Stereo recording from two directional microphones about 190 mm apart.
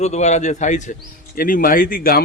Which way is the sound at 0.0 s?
35° left (ahead or behind).